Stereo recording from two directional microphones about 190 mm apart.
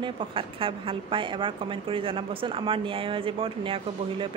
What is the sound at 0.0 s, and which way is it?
A woman's voice, 30° right (ahead or behind).